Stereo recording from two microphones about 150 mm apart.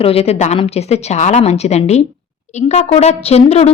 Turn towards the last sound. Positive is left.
turn(degrees=45)  # may be behind; listen again after turning